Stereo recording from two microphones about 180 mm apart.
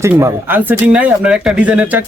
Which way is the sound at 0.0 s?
15° right (ahead or behind).